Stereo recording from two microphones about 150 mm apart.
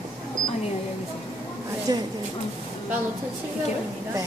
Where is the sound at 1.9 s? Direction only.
25° right (ahead or behind).